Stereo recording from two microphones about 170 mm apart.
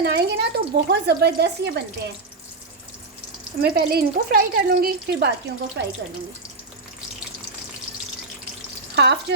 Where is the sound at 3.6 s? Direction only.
65° right (ahead or behind).